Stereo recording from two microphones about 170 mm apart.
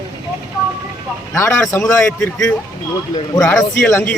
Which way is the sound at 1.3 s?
15° left (ahead or behind).